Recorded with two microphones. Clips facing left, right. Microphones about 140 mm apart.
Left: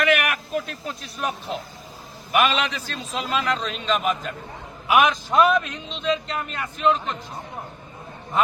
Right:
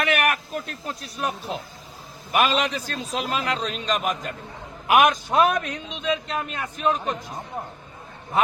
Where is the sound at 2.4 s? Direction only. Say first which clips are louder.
Right 1 dB; 35° right (ahead or behind).